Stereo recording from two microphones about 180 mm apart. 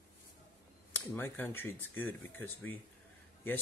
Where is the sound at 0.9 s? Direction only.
10° left (ahead or behind).